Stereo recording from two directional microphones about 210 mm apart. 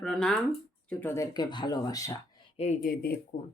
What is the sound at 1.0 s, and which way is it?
Speech, 15° left (ahead or behind).